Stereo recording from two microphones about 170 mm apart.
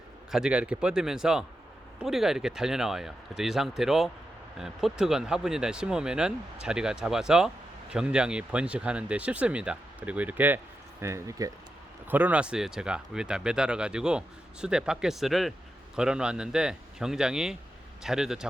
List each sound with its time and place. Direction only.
0.3 s speech: 5° right (ahead or behind)